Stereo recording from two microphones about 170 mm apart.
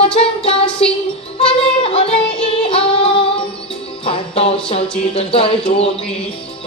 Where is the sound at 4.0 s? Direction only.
35° left (ahead or behind).